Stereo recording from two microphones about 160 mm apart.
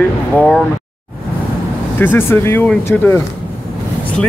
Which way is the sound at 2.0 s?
15° left (ahead or behind).